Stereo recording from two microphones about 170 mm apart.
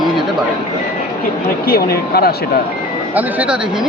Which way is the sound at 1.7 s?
65° left (ahead or behind).